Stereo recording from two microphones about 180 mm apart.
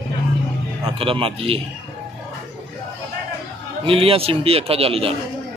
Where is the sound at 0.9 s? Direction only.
30° right (ahead or behind).